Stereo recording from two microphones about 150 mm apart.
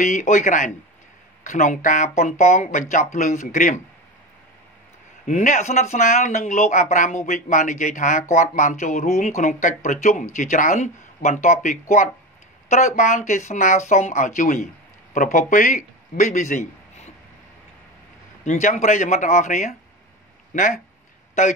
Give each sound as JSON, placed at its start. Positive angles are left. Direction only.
{"t": 0.0, "sound": "speech", "side_deg": 55}
{"t": 5.2, "sound": "a man's voice", "side_deg": 55}
{"t": 18.4, "sound": "speech", "side_deg": 55}